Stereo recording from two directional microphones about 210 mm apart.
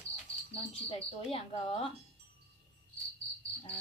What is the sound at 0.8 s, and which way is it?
A woman's voice, 30° left (ahead or behind).